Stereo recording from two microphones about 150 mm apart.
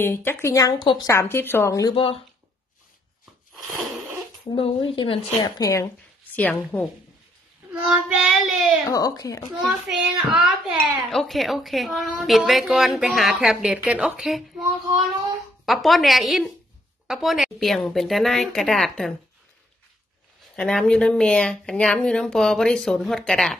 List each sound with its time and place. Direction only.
0.0 s a woman's voice: 15° left (ahead or behind)
1.1 s a woman's voice: 15° left (ahead or behind)
4.5 s speech: 35° left (ahead or behind)
5.6 s speech: 20° left (ahead or behind)
6.3 s a woman's voice: 10° left (ahead or behind)
7.9 s a woman's voice: 5° right (ahead or behind)
8.8 s speech: 25° left (ahead or behind)
9.6 s a woman's voice: centre (ahead or behind)
20.5 s a woman's voice: 5° left (ahead or behind)